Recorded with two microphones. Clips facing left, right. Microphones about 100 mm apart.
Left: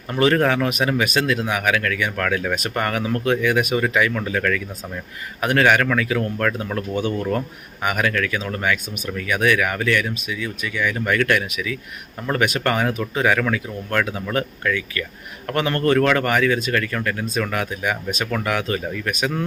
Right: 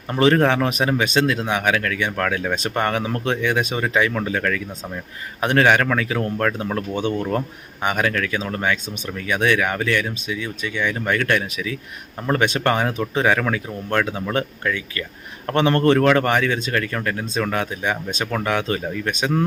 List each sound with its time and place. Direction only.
0.1 s speech: 30° right (ahead or behind)